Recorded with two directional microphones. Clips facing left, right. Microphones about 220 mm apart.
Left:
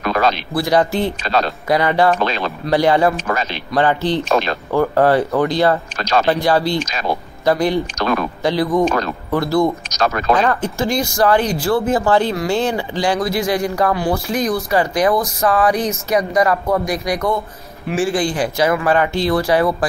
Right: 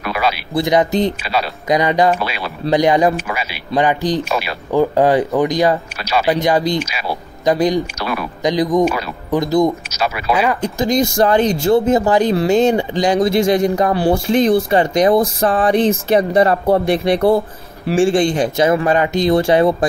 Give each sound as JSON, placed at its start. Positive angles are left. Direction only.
{"t": 0.0, "sound": "speech", "side_deg": -10}
{"t": 0.6, "sound": "speech", "side_deg": -20}